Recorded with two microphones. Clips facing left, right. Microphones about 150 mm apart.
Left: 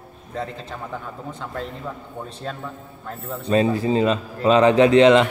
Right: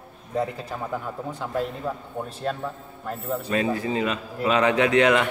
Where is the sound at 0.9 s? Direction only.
5° right (ahead or behind).